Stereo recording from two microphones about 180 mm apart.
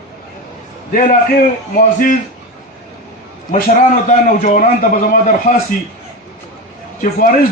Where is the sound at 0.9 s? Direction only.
50° left (ahead or behind).